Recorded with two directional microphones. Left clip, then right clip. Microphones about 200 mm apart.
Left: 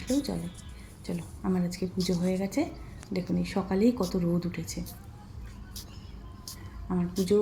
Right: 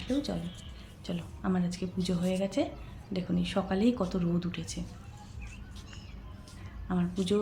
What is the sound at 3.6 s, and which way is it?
Speech, 5° right (ahead or behind).